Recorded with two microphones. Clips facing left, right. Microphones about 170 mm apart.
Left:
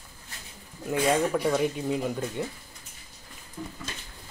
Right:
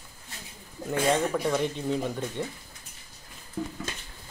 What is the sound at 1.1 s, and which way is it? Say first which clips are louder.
Speech: left 1 dB; 5° left (ahead or behind).